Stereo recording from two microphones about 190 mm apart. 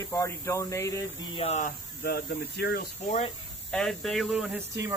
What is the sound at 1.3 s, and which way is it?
Speech, 30° left (ahead or behind).